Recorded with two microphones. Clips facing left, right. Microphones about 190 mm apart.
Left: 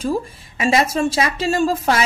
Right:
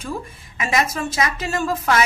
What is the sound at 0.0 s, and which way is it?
A woman's voice, 35° left (ahead or behind).